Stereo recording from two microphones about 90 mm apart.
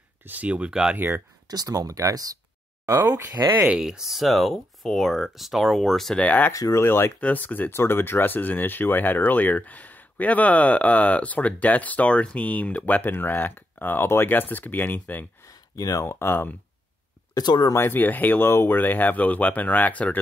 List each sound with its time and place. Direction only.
0.2 s speech: 20° right (ahead or behind)
0.9 s speech: 25° right (ahead or behind)
1.5 s speech: 45° right (ahead or behind)
2.9 s speech: 30° right (ahead or behind)
3.6 s speech: 10° right (ahead or behind)
6.1 s speech: 15° left (ahead or behind)
6.5 s speech: 35° left (ahead or behind)
7.2 s speech: 15° left (ahead or behind)
15.4 s a sound: 45° left (ahead or behind)
16.1 s speech: 25° left (ahead or behind)
17.3 s speech: 55° left (ahead or behind)
17.7 s speech: 25° left (ahead or behind)